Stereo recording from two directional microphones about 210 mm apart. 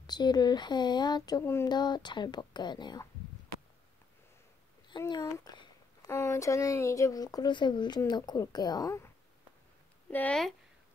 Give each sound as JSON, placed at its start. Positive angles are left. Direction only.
{"t": 0.0, "sound": "speech", "side_deg": 20}
{"t": 4.8, "sound": "speech", "side_deg": 20}
{"t": 10.1, "sound": "speech", "side_deg": 5}